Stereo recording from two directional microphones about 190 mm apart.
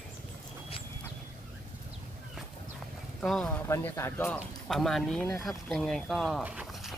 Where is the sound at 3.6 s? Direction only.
15° left (ahead or behind).